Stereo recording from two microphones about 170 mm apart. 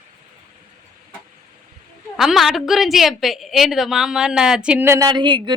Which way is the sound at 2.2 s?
Centre (ahead or behind).